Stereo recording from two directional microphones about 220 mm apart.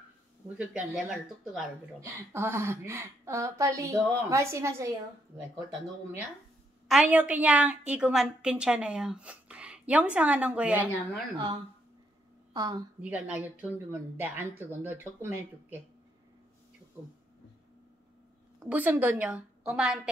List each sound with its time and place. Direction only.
0.6 s a woman's voice: 5° right (ahead or behind)
6.9 s a woman's voice: 5° right (ahead or behind)
11.3 s a woman's voice: 25° right (ahead or behind)
13.0 s a woman's voice: 5° right (ahead or behind)
18.6 s a woman's voice: 5° right (ahead or behind)